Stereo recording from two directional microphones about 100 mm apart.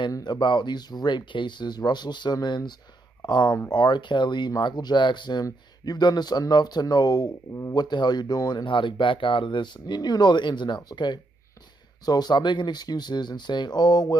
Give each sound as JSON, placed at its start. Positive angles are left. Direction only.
{"t": 0.2, "sound": "speech", "side_deg": 50}